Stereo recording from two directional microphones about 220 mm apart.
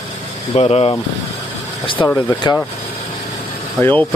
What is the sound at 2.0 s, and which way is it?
Speech, 15° left (ahead or behind).